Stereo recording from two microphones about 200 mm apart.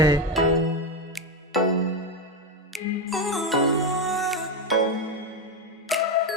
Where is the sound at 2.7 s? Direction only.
Centre (ahead or behind).